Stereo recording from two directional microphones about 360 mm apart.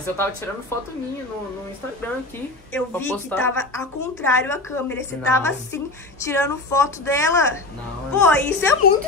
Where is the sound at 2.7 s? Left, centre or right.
Centre.